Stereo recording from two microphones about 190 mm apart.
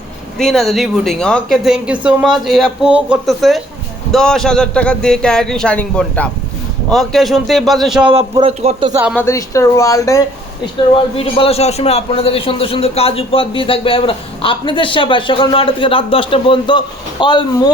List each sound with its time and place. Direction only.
0.3 s a woman's voice: centre (ahead or behind)
8.0 s speech: 30° right (ahead or behind)
9.1 s speech: 15° left (ahead or behind)
10.9 s a man's voice: 30° left (ahead or behind)